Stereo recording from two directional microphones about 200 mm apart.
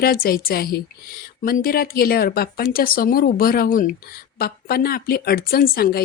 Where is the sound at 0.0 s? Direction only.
45° left (ahead or behind).